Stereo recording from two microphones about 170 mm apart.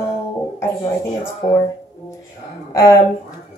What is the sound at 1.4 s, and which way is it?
Speech, 50° left (ahead or behind).